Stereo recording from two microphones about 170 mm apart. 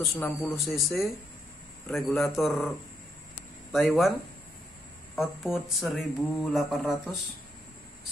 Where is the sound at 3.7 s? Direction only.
Centre (ahead or behind).